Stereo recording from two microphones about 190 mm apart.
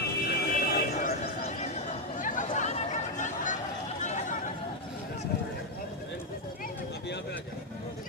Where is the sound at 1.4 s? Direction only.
35° left (ahead or behind).